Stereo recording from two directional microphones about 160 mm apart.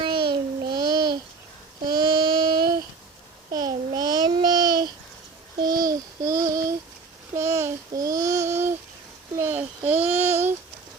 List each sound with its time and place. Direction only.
0.0 s child singing: 35° right (ahead or behind)
0.6 s babbling: 25° right (ahead or behind)
1.9 s child singing: 30° right (ahead or behind)
3.5 s babbling: 25° right (ahead or behind)
5.6 s child singing: 25° right (ahead or behind)
9.3 s a sound: 15° right (ahead or behind)
9.8 s child singing: 10° right (ahead or behind)